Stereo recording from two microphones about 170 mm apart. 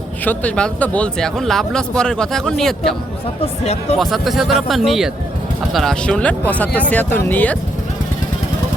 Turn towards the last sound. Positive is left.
turn(degrees=10)  # may be behind; listen again after turning